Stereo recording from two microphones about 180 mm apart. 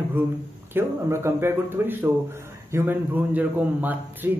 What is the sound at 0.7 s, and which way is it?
A man's voice, 15° right (ahead or behind).